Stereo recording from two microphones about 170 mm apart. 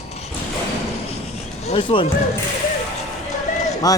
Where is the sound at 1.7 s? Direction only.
30° left (ahead or behind).